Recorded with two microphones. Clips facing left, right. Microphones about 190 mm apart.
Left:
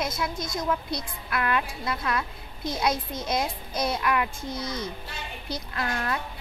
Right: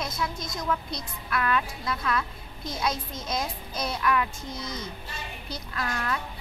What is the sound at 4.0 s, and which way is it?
Speech, 20° left (ahead or behind).